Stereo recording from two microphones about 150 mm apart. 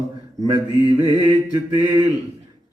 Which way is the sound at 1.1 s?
30° right (ahead or behind).